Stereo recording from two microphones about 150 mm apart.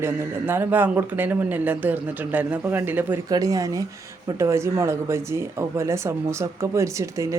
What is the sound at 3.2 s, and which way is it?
Speech, 25° right (ahead or behind).